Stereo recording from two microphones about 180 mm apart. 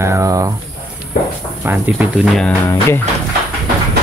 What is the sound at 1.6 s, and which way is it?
Speech, 10° right (ahead or behind).